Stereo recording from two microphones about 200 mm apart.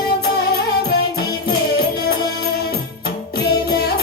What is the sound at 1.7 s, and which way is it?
Music, 50° left (ahead or behind).